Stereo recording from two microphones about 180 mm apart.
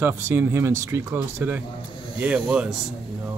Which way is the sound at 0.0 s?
10° right (ahead or behind).